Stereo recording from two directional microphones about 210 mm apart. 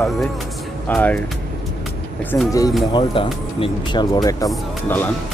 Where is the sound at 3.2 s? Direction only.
25° left (ahead or behind).